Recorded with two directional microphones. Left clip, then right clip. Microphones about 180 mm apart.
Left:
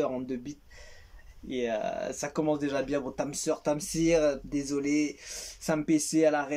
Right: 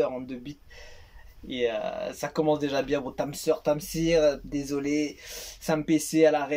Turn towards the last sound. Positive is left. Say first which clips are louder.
# right 4 dB
turn(degrees=5)  # may be behind; listen again after turning